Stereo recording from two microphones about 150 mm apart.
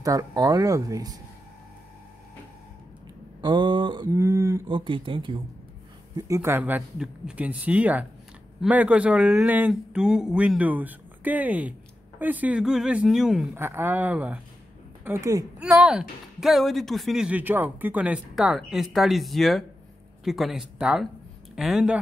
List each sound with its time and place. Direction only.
0.0 s speech: 25° right (ahead or behind)
3.3 s speech: 30° right (ahead or behind)
4.1 s speech: 20° right (ahead or behind)
4.6 s speech: 35° right (ahead or behind)
6.1 s speech: 20° right (ahead or behind); by 13.5 s 5° right (ahead or behind)
13.6 s speech: 15° right (ahead or behind)
15.0 s speech: 20° right (ahead or behind)
15.6 s speech: 5° right (ahead or behind)